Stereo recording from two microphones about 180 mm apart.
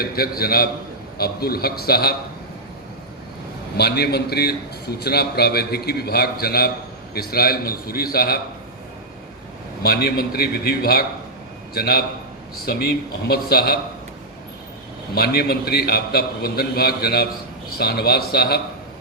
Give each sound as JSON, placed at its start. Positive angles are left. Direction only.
{"t": 0.0, "sound": "a man's voice", "side_deg": 60}
{"t": 3.8, "sound": "a man's voice", "side_deg": 65}
{"t": 9.8, "sound": "a man's voice", "side_deg": 60}
{"t": 15.1, "sound": "a man's voice", "side_deg": 60}